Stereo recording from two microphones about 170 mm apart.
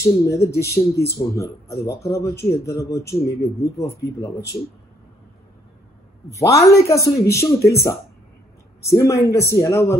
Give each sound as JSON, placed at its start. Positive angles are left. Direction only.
{"t": 0.0, "sound": "speech", "side_deg": 15}
{"t": 6.3, "sound": "speech", "side_deg": 20}